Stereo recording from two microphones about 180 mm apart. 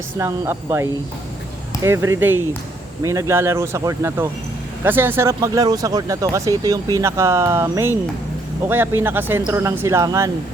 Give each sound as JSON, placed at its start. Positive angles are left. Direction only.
{"t": 0.2, "sound": "speech", "side_deg": -15}